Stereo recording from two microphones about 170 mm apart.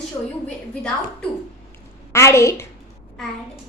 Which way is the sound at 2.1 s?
15° left (ahead or behind).